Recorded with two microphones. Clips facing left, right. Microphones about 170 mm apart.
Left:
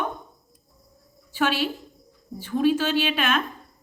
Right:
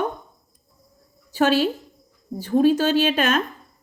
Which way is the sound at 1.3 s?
40° right (ahead or behind).